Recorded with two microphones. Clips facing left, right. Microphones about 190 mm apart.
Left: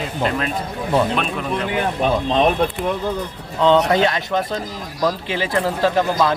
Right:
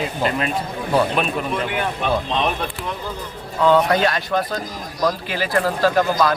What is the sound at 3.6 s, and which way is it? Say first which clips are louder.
Speech: left 1 dB; 20° left (ahead or behind).